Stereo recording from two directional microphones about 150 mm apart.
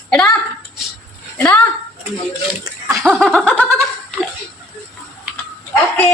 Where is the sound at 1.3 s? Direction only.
10° left (ahead or behind).